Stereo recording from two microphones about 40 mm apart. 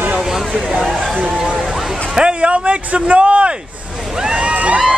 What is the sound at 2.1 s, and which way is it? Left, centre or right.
Speech, right.